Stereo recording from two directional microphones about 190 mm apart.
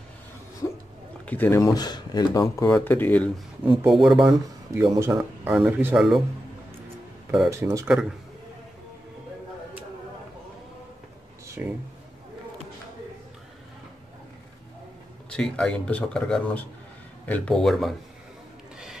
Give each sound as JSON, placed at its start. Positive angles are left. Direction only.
{"t": 1.2, "sound": "speech", "side_deg": 10}
{"t": 3.8, "sound": "speech", "side_deg": 0}
{"t": 4.3, "sound": "speech", "side_deg": -15}
{"t": 7.2, "sound": "speech", "side_deg": -10}
{"t": 11.6, "sound": "speech", "side_deg": -10}
{"t": 15.3, "sound": "speech", "side_deg": 5}